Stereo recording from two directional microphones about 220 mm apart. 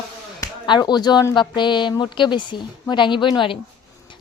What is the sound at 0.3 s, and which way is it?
A woman's voice, 20° left (ahead or behind).